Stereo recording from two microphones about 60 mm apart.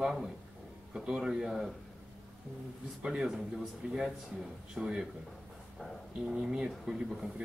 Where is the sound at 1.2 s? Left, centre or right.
Centre.